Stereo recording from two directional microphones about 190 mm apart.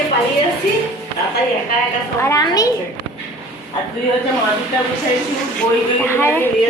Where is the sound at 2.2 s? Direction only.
15° left (ahead or behind).